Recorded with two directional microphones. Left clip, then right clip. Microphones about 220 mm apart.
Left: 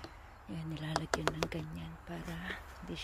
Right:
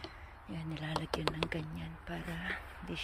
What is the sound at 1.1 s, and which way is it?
Speech, 10° left (ahead or behind).